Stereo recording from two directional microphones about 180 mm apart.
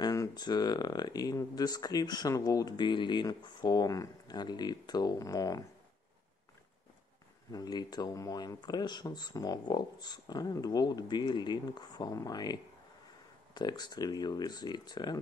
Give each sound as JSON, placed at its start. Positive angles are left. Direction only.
{"t": 0.0, "sound": "speech", "side_deg": 20}
{"t": 7.5, "sound": "speech", "side_deg": 20}
{"t": 13.6, "sound": "speech", "side_deg": 20}